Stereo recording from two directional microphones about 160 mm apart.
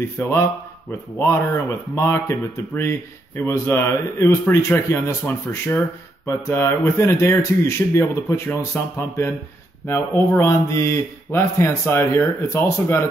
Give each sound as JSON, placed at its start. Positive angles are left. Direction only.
{"t": 0.0, "sound": "speech", "side_deg": 15}